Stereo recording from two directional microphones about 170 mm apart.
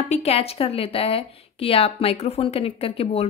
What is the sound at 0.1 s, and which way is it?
A woman's voice, 35° left (ahead or behind).